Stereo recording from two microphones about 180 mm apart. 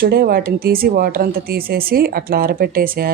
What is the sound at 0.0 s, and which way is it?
A woman's voice, 55° right (ahead or behind).